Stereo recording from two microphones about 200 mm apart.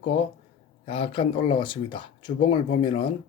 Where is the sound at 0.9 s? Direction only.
30° left (ahead or behind).